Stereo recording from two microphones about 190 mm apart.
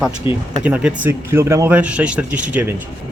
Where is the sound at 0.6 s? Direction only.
5° right (ahead or behind).